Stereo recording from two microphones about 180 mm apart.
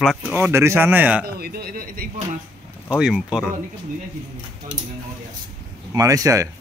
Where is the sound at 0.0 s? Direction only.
Centre (ahead or behind).